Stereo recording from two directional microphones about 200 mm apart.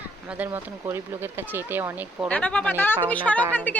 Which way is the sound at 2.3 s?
5° left (ahead or behind).